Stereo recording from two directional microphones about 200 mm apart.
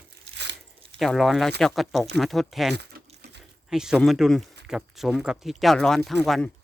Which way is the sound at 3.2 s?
55° right (ahead or behind).